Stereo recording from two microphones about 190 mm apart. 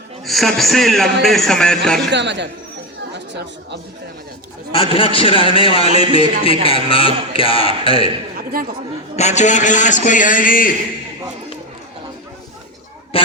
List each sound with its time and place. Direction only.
0.3 s a man's voice: centre (ahead or behind)
2.0 s speech: 65° right (ahead or behind)
4.7 s a man's voice: 30° left (ahead or behind)
9.1 s a man's voice: 35° left (ahead or behind)
13.1 s a sound: 30° left (ahead or behind)